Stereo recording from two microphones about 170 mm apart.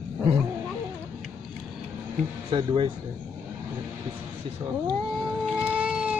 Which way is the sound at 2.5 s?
30° right (ahead or behind).